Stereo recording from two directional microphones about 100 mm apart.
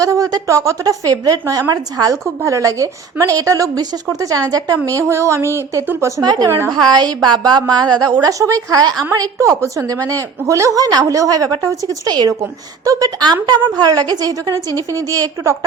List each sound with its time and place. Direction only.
0.0 s a woman's voice: 35° right (ahead or behind)
6.8 s a woman's voice: 45° right (ahead or behind)